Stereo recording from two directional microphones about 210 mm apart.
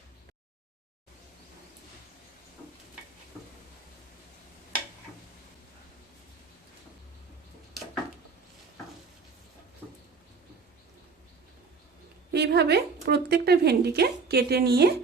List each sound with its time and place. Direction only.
12.3 s speech: 50° right (ahead or behind)